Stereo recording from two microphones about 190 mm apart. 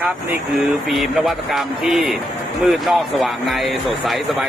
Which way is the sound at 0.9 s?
Centre (ahead or behind).